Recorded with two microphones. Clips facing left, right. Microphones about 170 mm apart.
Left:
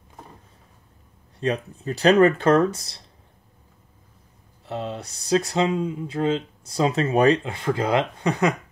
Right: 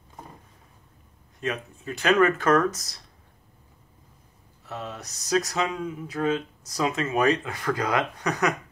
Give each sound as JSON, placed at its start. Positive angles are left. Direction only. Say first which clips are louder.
{"t": 1.4, "sound": "speech", "louder": "left 5 dB", "side_deg": 35}
{"t": 4.6, "sound": "speech", "louder": "left 6 dB", "side_deg": 30}